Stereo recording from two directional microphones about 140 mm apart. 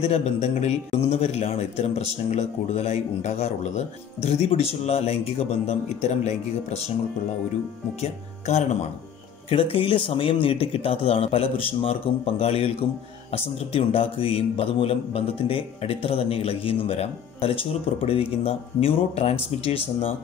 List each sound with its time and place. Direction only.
0.0 s a man's voice: 50° left (ahead or behind)
8.0 s a man's voice: 50° left (ahead or behind)
9.5 s a man's voice: 40° left (ahead or behind)